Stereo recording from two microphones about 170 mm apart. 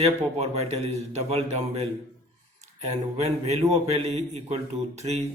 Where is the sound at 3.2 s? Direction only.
40° right (ahead or behind).